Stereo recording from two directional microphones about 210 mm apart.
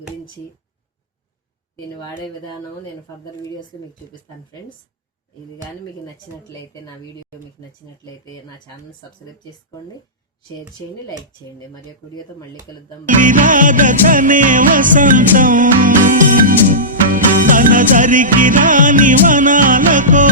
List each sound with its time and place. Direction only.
13.1 s music: 40° right (ahead or behind)